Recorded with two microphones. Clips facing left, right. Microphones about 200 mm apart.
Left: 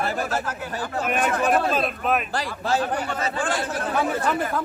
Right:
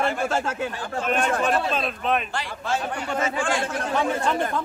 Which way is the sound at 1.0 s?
5° left (ahead or behind).